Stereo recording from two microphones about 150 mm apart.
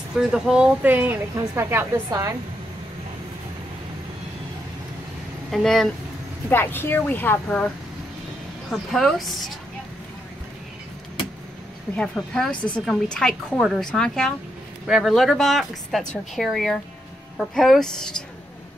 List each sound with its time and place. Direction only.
0.1 s a woman's voice: 5° right (ahead or behind); by 2.3 s 25° right (ahead or behind)
5.5 s speech: centre (ahead or behind)
6.5 s a woman's voice: 15° left (ahead or behind)
8.6 s speech: centre (ahead or behind)
12.2 s speech: 5° left (ahead or behind)